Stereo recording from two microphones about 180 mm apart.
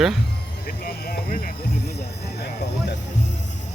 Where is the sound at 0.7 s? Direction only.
55° left (ahead or behind).